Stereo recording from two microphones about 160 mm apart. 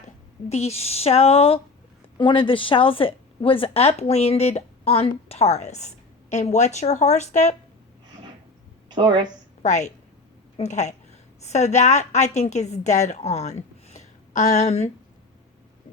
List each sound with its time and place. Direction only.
0.4 s speech: 40° left (ahead or behind)
9.0 s a woman's voice: 30° right (ahead or behind)
9.6 s a woman's voice: 45° left (ahead or behind)